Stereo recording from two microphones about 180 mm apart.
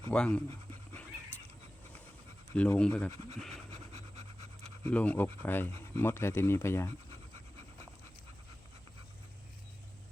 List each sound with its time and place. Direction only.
0.1 s speech: 5° left (ahead or behind)
2.6 s speech: 5° left (ahead or behind)
3.1 s speech: 35° right (ahead or behind)
3.9 s pant: 35° right (ahead or behind)
4.8 s speech: 10° left (ahead or behind)